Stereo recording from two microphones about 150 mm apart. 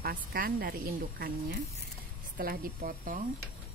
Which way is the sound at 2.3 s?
70° right (ahead or behind).